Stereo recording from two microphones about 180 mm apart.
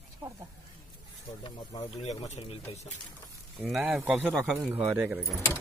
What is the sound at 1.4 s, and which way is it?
Speech, 20° left (ahead or behind).